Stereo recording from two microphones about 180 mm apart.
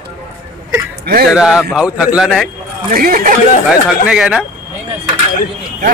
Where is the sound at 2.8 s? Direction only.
55° right (ahead or behind).